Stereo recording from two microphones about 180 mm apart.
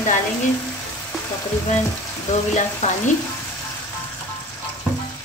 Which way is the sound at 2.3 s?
40° left (ahead or behind).